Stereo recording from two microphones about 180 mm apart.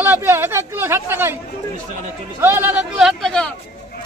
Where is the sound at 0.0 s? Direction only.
15° right (ahead or behind).